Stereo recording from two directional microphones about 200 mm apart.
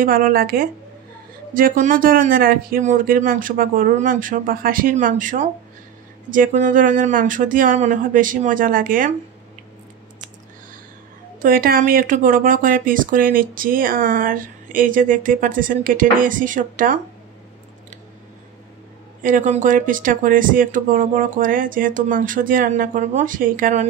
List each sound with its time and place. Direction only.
0.0 s speech: 45° right (ahead or behind)
11.4 s speech: 45° right (ahead or behind)
19.2 s speech: 40° right (ahead or behind)